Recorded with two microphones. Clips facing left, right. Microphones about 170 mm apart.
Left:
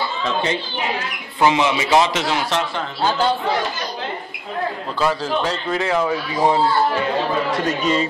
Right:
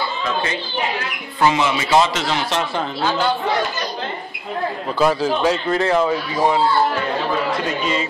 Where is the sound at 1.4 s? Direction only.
15° left (ahead or behind).